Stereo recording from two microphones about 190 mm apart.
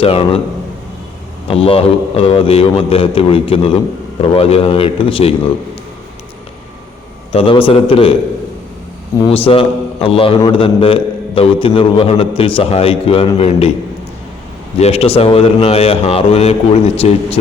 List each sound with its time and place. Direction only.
0.0 s a man's voice: 30° left (ahead or behind)
1.5 s a man's voice: 30° left (ahead or behind)
7.3 s a man's voice: 30° left (ahead or behind)
9.3 s a man's voice: 30° left (ahead or behind)
14.8 s a man's voice: 30° left (ahead or behind)